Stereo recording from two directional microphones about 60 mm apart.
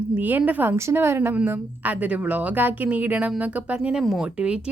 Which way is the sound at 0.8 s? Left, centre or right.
Right.